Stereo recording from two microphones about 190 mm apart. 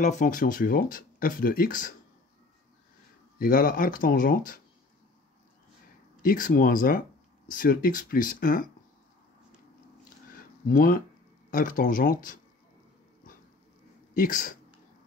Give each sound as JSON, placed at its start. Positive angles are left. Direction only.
{"t": 0.0, "sound": "speech", "side_deg": 40}
{"t": 3.3, "sound": "speech", "side_deg": 50}
{"t": 6.2, "sound": "speech", "side_deg": 50}
{"t": 10.3, "sound": "a sound", "side_deg": 50}
{"t": 11.5, "sound": "speech", "side_deg": 45}
{"t": 14.1, "sound": "speech", "side_deg": 45}